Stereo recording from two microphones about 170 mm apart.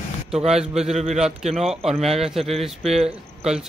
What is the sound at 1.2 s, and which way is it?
Speech, centre (ahead or behind).